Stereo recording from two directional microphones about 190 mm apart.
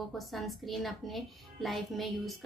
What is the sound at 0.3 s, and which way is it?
A child's voice, centre (ahead or behind).